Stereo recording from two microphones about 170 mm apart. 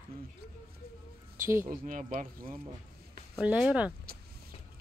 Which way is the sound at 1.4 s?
15° right (ahead or behind).